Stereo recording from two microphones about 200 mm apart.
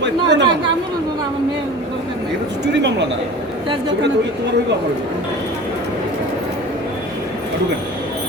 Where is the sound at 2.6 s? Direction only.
60° right (ahead or behind).